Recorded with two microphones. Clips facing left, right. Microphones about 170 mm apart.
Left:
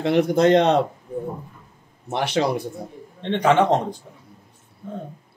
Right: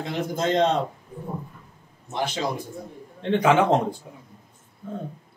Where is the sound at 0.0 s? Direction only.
70° left (ahead or behind).